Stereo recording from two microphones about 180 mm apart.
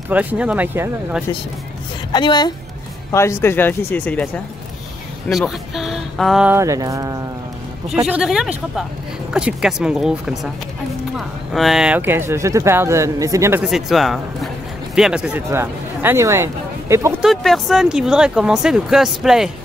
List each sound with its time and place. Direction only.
0.1 s speech: 10° right (ahead or behind)
2.1 s a woman's voice: 25° left (ahead or behind); by 4.3 s 10° left (ahead or behind)
5.3 s speech: centre (ahead or behind)
6.5 s a sound: 15° right (ahead or behind)
8.1 s speech: 5° right (ahead or behind)
13.7 s speech: centre (ahead or behind)
17.2 s speech: centre (ahead or behind)